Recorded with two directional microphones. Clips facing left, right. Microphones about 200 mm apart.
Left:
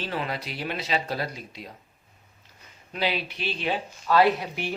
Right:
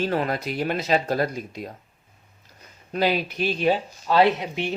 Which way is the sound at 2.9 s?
45° right (ahead or behind).